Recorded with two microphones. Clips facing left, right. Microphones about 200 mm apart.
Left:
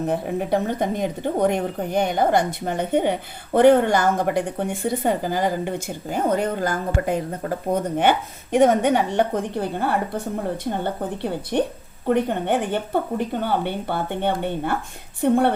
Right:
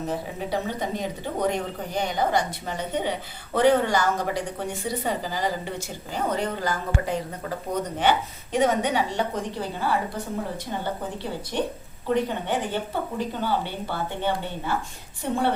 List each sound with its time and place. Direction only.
0.1 s a woman's voice: 55° left (ahead or behind)